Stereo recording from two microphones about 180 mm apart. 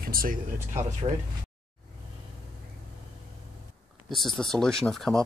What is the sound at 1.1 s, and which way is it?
Speech, 35° right (ahead or behind).